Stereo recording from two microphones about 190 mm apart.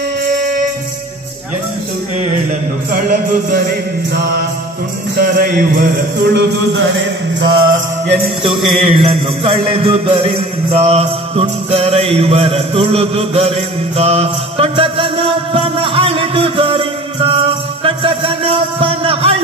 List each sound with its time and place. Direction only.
2.9 s music: 50° right (ahead or behind)
4.1 s speech: 60° right (ahead or behind); by 7.8 s 75° right (ahead or behind)
8.6 s music: 30° right (ahead or behind)